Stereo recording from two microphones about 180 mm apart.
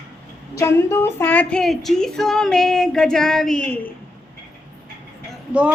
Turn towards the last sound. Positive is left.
turn(degrees=-5)  # may be behind; listen again after turning